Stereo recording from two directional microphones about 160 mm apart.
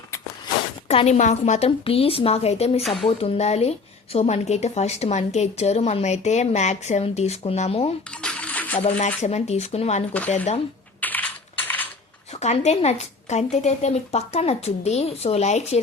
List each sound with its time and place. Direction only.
0.9 s a woman's voice: 45° left (ahead or behind)
8.1 s coin: 5° left (ahead or behind)
8.8 s speech: 45° left (ahead or behind)
10.1 s speech: 10° left (ahead or behind)
10.3 s speech: 45° left (ahead or behind)
11.0 s typing: 10° left (ahead or behind)
12.3 s speech: 45° left (ahead or behind)